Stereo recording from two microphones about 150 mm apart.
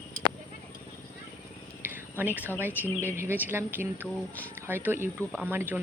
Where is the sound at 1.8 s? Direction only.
15° right (ahead or behind).